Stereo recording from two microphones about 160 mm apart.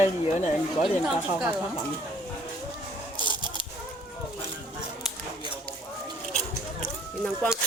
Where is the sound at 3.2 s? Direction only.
30° left (ahead or behind).